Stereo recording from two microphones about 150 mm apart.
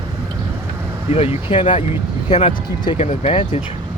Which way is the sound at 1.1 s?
40° left (ahead or behind).